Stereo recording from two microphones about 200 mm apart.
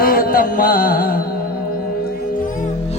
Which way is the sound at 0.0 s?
45° left (ahead or behind).